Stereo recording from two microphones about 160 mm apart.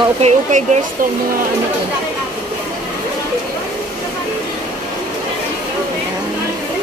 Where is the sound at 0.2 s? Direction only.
50° right (ahead or behind).